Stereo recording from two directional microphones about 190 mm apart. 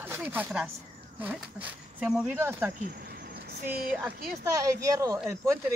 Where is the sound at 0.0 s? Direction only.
10° right (ahead or behind).